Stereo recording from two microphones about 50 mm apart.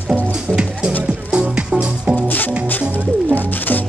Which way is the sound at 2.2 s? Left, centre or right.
Left.